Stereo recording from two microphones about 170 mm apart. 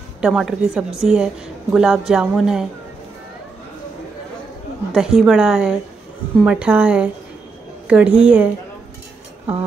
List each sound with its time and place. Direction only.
0.2 s a woman's voice: 5° right (ahead or behind)
4.9 s a woman's voice: 5° right (ahead or behind)